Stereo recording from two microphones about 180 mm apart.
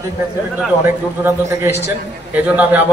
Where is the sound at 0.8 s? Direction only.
15° right (ahead or behind).